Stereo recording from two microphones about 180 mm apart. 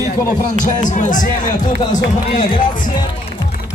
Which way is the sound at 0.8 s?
45° left (ahead or behind).